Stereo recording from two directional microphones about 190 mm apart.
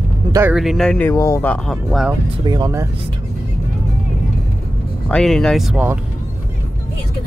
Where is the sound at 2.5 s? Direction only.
15° right (ahead or behind).